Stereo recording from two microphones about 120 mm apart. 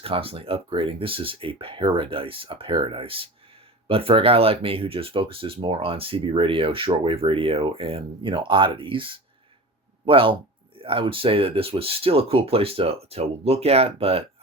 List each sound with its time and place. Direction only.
0.0 s speech: 50° right (ahead or behind)